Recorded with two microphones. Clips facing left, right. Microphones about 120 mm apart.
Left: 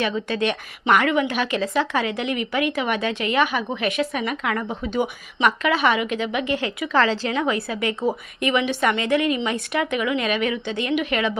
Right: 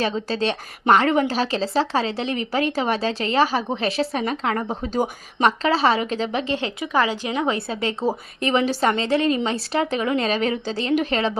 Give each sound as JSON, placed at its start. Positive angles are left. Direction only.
{"t": 0.0, "sound": "a woman's voice", "side_deg": -35}
{"t": 6.9, "sound": "a woman's voice", "side_deg": -15}